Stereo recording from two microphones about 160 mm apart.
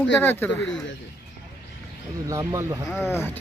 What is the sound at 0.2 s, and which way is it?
Speech, 10° left (ahead or behind).